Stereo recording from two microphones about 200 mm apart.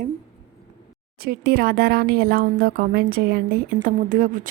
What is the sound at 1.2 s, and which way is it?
Speech, 50° right (ahead or behind).